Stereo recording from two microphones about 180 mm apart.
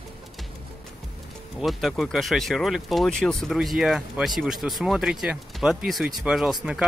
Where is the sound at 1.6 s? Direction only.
Centre (ahead or behind).